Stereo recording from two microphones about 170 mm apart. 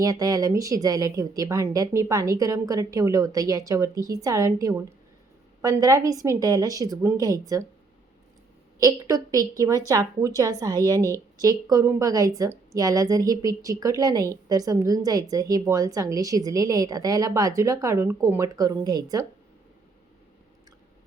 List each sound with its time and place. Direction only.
0.0 s a woman's voice: 20° right (ahead or behind)
8.8 s a woman's voice: 20° right (ahead or behind)